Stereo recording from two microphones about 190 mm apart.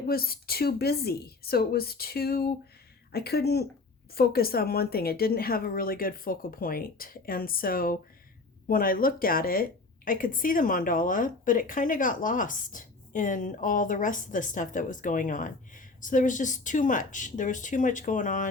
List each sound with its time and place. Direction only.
0.1 s a woman's voice: 50° left (ahead or behind)